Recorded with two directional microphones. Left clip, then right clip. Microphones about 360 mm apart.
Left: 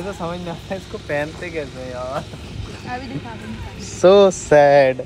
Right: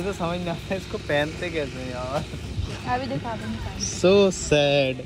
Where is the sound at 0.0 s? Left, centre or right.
Centre.